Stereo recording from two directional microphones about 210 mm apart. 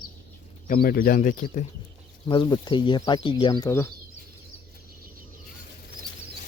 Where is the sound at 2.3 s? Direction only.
20° left (ahead or behind).